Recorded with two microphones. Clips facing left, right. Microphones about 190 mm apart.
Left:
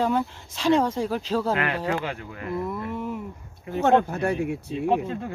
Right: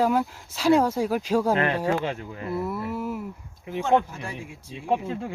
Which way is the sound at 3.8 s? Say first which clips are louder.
Left 3 dB; 65° left (ahead or behind).